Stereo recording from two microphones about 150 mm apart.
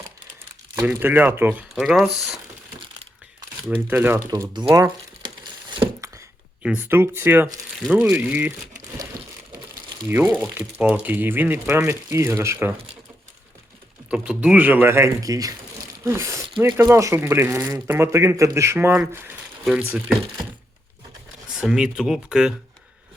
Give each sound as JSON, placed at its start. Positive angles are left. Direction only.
{"t": 0.8, "sound": "speech", "side_deg": -10}
{"t": 1.7, "sound": "speech", "side_deg": 0}
{"t": 3.8, "sound": "speech", "side_deg": -15}
{"t": 4.3, "sound": "speech", "side_deg": -30}
{"t": 6.6, "sound": "speech", "side_deg": -10}
{"t": 7.8, "sound": "speech", "side_deg": -5}
{"t": 10.1, "sound": "speech", "side_deg": -15}
{"t": 14.1, "sound": "speech", "side_deg": -5}
{"t": 21.5, "sound": "speech", "side_deg": -5}